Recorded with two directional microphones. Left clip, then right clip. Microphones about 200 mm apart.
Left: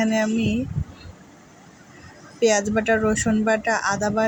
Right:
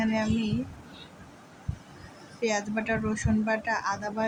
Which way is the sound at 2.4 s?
15° left (ahead or behind).